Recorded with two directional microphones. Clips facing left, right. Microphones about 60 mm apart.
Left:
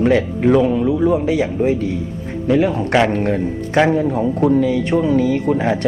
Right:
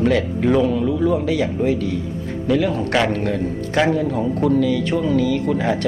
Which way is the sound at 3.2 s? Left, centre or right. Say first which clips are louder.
Left 3 dB; left.